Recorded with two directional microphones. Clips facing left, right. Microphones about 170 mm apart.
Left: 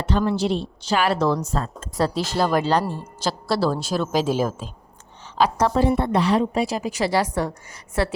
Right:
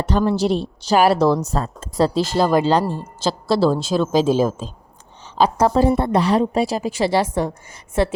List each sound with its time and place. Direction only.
0.0 s a woman's voice: 40° right (ahead or behind); by 4.7 s 20° right (ahead or behind)
5.5 s a woman's voice: 35° right (ahead or behind)